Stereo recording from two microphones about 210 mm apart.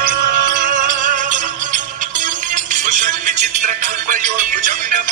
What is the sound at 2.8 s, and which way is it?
Music, 35° right (ahead or behind).